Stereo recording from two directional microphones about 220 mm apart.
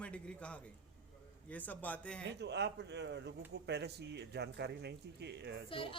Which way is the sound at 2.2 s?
50° right (ahead or behind).